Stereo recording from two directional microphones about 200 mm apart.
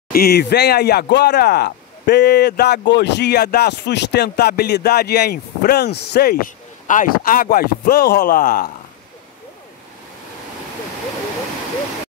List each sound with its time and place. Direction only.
0.1 s speech: 50° left (ahead or behind)